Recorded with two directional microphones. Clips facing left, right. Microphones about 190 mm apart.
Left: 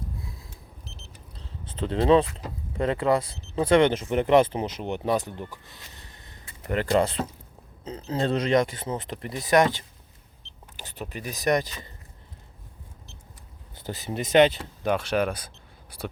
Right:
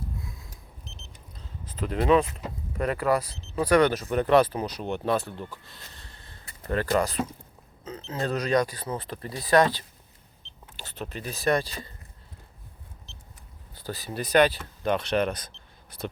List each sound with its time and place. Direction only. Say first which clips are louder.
0.2 s a sound: even; 30° left (ahead or behind)
1.6 s speech: left 2 dB; 25° left (ahead or behind)
13.7 s speech: left 2 dB; 20° left (ahead or behind)
14.8 s speech: even; 5° left (ahead or behind)